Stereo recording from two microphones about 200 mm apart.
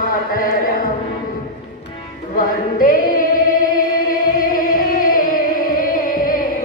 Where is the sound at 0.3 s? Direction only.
45° left (ahead or behind).